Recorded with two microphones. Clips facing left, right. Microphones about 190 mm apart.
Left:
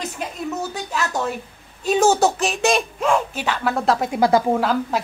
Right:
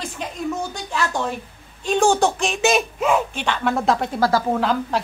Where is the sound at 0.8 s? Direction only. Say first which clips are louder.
Right 1 dB; 5° left (ahead or behind).